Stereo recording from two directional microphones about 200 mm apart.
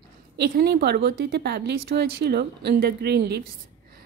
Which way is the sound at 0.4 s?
55° right (ahead or behind).